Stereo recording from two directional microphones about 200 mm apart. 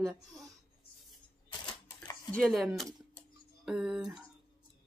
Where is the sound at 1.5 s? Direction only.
20° left (ahead or behind).